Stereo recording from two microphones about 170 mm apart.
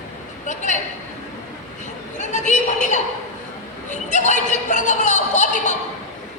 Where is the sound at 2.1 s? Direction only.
45° left (ahead or behind).